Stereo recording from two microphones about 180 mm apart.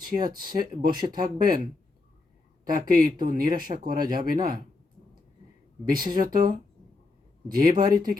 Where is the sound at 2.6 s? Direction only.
50° right (ahead or behind).